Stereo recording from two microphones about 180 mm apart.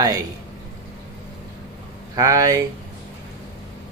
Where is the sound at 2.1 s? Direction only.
20° right (ahead or behind).